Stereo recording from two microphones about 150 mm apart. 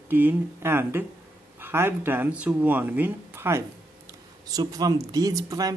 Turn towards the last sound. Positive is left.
turn(degrees=-25)  # may be behind; listen again after turning